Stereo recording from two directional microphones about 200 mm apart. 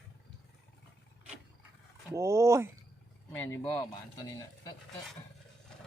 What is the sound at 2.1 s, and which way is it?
Speech, 15° right (ahead or behind).